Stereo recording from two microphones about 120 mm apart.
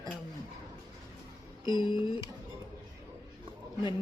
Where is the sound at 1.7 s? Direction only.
40° left (ahead or behind).